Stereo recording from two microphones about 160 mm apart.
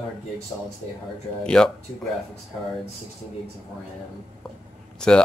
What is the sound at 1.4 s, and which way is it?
Speech, 5° left (ahead or behind).